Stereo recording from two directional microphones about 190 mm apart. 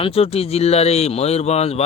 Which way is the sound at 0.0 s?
30° left (ahead or behind).